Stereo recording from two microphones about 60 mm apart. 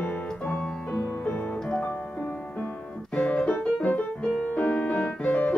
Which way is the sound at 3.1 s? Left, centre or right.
Centre.